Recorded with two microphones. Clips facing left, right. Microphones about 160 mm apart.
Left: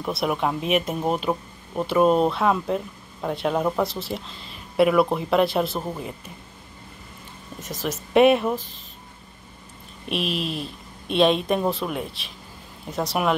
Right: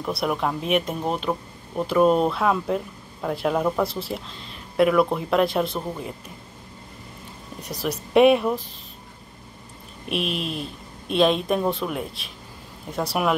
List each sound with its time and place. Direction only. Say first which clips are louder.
0.0 s a woman's voice: even; centre (ahead or behind)
8.1 s a woman's voice: even; centre (ahead or behind)
10.0 s a woman's voice: even; centre (ahead or behind)